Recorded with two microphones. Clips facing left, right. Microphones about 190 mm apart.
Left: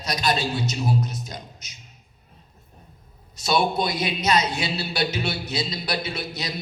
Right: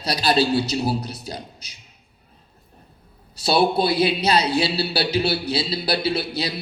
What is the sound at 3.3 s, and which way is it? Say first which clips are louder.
Speech: right 4 dB; 30° right (ahead or behind).